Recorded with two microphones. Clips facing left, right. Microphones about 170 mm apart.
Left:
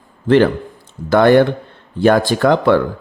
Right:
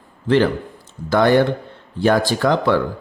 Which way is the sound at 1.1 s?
55° left (ahead or behind).